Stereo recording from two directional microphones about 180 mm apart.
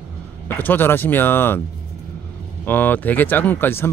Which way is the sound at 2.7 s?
10° left (ahead or behind).